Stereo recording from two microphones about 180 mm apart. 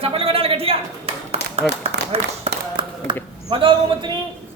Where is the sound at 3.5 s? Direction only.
30° right (ahead or behind).